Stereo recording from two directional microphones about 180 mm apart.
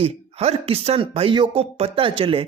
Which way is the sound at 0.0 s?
35° right (ahead or behind).